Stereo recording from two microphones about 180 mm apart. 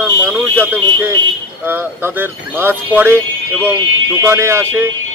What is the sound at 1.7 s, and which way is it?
Speech, 10° right (ahead or behind).